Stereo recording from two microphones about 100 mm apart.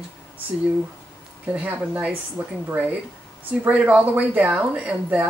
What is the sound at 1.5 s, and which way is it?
Speech, 15° right (ahead or behind).